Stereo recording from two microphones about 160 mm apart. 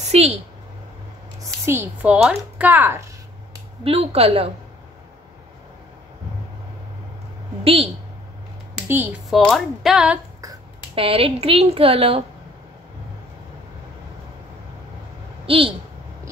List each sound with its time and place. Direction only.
0.0 s a sound: 40° right (ahead or behind)
1.4 s speech: 15° right (ahead or behind)
3.8 s a woman's voice: 35° right (ahead or behind)
7.6 s a woman's voice: 35° right (ahead or behind)
8.8 s speech: 15° right (ahead or behind)
9.5 s speech: centre (ahead or behind)
11.0 s a woman's voice: 35° right (ahead or behind)
15.4 s speech: 35° right (ahead or behind)